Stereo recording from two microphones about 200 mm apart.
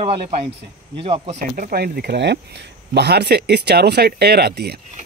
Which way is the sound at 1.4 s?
50° right (ahead or behind).